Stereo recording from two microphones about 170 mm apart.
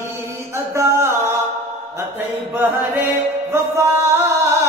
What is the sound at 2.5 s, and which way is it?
Music, 10° right (ahead or behind).